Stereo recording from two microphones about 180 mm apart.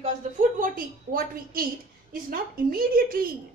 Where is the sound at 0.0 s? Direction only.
45° right (ahead or behind).